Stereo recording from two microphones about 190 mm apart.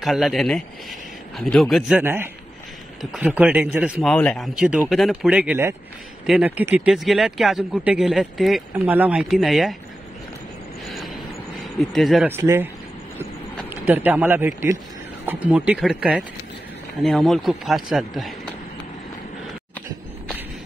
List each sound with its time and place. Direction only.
0.0 s speech: centre (ahead or behind)
11.9 s speech: centre (ahead or behind)
12.3 s speech: 10° right (ahead or behind)
13.7 s speech: 10° right (ahead or behind)